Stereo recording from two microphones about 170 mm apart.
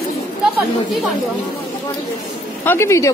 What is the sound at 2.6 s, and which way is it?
Speech, 15° left (ahead or behind).